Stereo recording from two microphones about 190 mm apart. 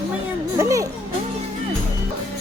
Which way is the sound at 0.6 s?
15° right (ahead or behind).